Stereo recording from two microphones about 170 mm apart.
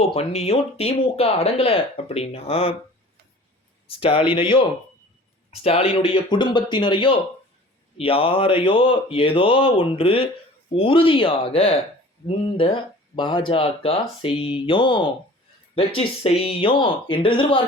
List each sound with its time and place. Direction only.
0.0 s speech: 35° left (ahead or behind)
3.8 s speech: 35° left (ahead or behind)